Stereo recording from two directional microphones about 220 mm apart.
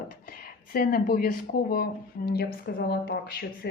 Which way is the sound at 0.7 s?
40° left (ahead or behind).